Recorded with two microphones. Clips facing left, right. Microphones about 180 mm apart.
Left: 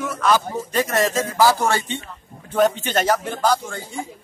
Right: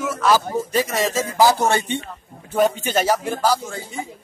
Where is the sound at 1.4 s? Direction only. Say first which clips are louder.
Right 1 dB; 20° right (ahead or behind).